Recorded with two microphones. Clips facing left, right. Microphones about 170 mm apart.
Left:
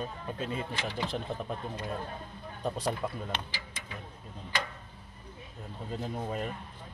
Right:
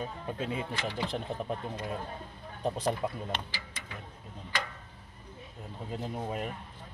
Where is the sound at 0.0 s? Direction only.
10° right (ahead or behind).